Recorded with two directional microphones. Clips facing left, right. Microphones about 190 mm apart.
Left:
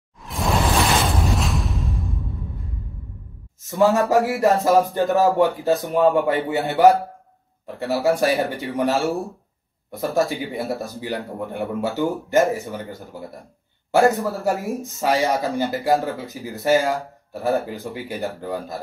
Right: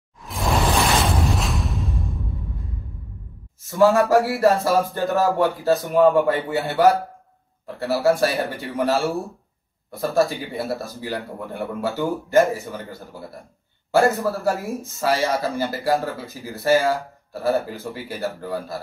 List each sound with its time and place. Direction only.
0.2 s a sound: centre (ahead or behind)
1.3 s music: centre (ahead or behind)
4.1 s a man's voice: 15° left (ahead or behind)
13.9 s a man's voice: 15° left (ahead or behind)